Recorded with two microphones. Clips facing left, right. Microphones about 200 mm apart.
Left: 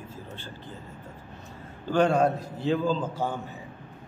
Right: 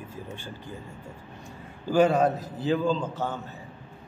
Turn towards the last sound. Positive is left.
turn(degrees=10)  # may be behind; listen again after turning